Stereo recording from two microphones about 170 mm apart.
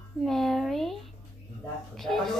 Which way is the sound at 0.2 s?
Centre (ahead or behind).